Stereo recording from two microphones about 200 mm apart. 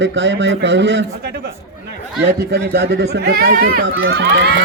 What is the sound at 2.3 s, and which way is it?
Speech, 55° right (ahead or behind).